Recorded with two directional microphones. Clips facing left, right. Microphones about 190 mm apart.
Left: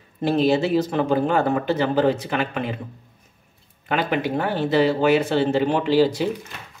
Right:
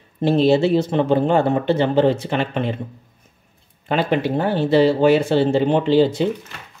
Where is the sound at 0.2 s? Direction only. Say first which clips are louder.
Right 4 dB; 30° right (ahead or behind).